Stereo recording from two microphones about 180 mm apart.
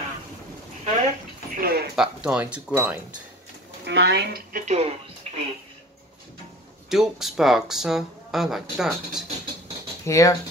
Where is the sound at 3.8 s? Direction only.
75° right (ahead or behind).